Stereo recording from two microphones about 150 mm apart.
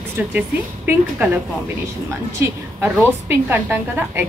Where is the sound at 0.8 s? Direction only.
10° right (ahead or behind).